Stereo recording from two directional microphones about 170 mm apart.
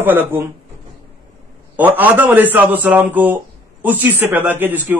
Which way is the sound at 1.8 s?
10° right (ahead or behind).